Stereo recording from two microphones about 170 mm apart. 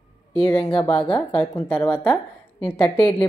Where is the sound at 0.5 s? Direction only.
30° left (ahead or behind).